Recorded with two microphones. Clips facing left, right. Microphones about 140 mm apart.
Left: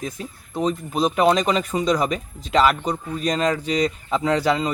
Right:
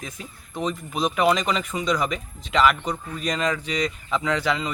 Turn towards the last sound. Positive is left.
turn(degrees=35)  # may be behind; listen again after turning